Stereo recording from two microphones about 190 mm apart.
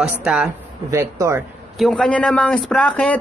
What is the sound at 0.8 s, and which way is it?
Speech, 15° right (ahead or behind).